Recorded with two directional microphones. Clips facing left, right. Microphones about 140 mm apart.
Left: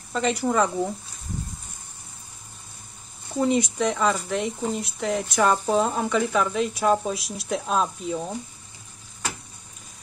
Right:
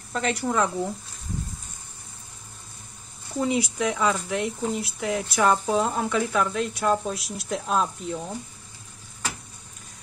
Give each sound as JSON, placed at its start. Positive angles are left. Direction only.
{"t": 0.1, "sound": "speech", "side_deg": 0}
{"t": 3.3, "sound": "speech", "side_deg": -5}